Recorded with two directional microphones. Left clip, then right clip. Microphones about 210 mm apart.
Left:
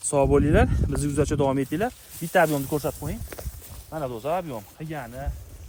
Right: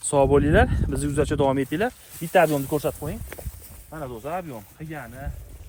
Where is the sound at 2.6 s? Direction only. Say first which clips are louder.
Right 2 dB; 30° right (ahead or behind).